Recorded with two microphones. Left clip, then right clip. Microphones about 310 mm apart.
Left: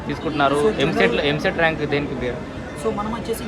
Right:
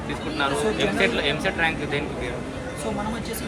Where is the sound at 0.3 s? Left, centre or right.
Left.